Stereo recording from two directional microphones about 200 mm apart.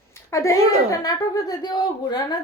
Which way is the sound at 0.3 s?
15° left (ahead or behind).